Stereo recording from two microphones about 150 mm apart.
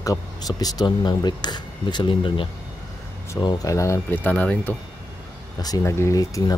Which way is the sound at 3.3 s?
20° left (ahead or behind).